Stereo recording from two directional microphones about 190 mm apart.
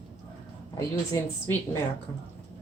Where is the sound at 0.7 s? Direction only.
15° left (ahead or behind).